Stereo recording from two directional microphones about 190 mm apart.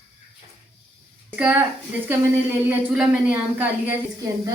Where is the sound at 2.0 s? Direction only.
10° right (ahead or behind).